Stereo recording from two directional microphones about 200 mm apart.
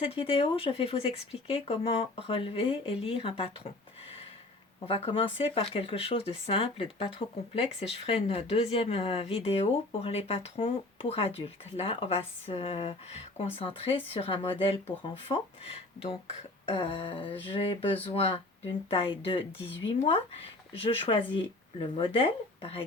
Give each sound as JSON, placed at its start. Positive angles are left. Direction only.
{"t": 0.0, "sound": "speech", "side_deg": 30}
{"t": 4.9, "sound": "speech", "side_deg": 30}